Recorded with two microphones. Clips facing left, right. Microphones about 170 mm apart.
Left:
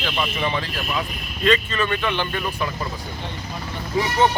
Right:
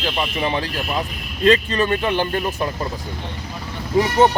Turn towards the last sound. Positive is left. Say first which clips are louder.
# right 3 dB
turn(degrees=-45)  # may be behind; listen again after turning